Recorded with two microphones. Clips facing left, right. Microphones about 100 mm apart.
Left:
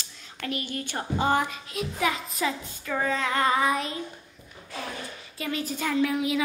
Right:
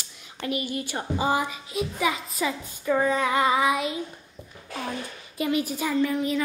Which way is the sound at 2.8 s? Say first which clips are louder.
Right 5 dB; 15° right (ahead or behind).